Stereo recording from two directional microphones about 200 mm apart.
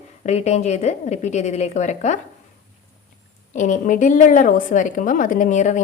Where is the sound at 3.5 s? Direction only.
40° left (ahead or behind).